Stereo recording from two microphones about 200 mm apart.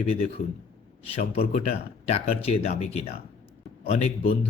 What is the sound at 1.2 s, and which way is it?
Speech, 45° left (ahead or behind).